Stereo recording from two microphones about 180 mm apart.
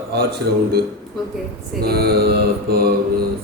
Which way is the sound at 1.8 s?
60° right (ahead or behind).